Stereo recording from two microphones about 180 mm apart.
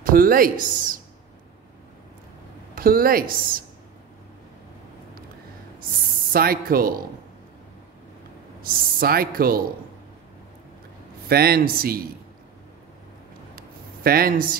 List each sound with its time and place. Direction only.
0.0 s speech: 50° right (ahead or behind)
2.7 s speech: 55° right (ahead or behind)
6.3 s speech: 55° right (ahead or behind)
9.0 s speech: 55° right (ahead or behind)
11.2 s speech: 60° right (ahead or behind)
13.6 s a sound: 55° right (ahead or behind)